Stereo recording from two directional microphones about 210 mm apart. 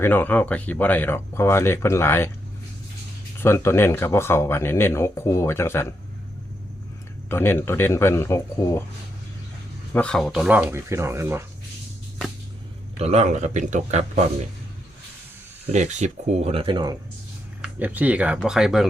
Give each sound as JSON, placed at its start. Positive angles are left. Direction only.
{"t": 0.0, "sound": "speech", "side_deg": 10}
{"t": 3.4, "sound": "speech", "side_deg": 10}
{"t": 7.3, "sound": "speech", "side_deg": 10}
{"t": 9.9, "sound": "speech", "side_deg": 5}
{"t": 13.0, "sound": "speech", "side_deg": -30}
{"t": 15.7, "sound": "speech", "side_deg": -35}
{"t": 17.6, "sound": "speech", "side_deg": -10}